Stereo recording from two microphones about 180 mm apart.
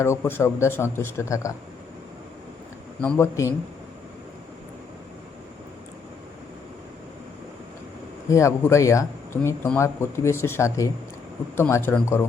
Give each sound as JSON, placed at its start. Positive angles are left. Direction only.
{"t": 0.0, "sound": "speech", "side_deg": 15}
{"t": 3.0, "sound": "speech", "side_deg": 10}
{"t": 8.3, "sound": "speech", "side_deg": 15}